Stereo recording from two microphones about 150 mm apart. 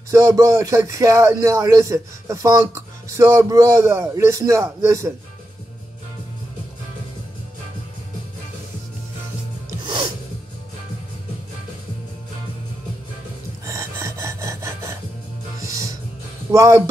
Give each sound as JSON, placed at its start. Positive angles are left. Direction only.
{"t": 0.1, "sound": "speech", "side_deg": -20}
{"t": 9.7, "sound": "music", "side_deg": -30}
{"t": 13.7, "sound": "rub", "side_deg": -20}
{"t": 15.6, "sound": "music", "side_deg": -20}
{"t": 16.5, "sound": "speech", "side_deg": -20}